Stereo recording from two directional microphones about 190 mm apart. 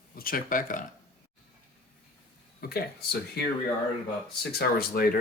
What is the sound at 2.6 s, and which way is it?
Speech, 55° left (ahead or behind).